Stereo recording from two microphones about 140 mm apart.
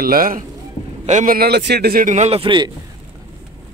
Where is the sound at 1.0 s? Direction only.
70° right (ahead or behind); by 2.7 s 35° right (ahead or behind).